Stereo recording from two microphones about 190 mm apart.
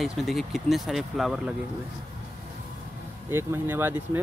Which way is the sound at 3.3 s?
10° right (ahead or behind).